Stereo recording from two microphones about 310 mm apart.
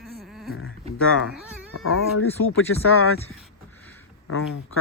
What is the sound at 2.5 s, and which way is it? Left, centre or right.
Speech, left.